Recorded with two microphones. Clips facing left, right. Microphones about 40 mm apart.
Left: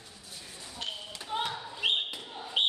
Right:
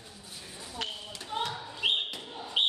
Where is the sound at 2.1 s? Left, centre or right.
Centre.